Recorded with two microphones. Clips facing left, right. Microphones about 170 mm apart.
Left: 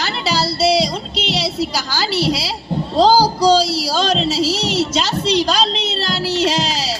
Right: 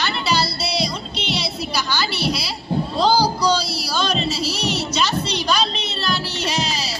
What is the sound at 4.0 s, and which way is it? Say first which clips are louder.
Music: left 4 dB; 90° left.